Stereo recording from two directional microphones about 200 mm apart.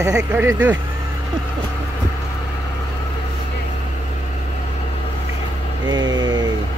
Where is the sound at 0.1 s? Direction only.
5° right (ahead or behind).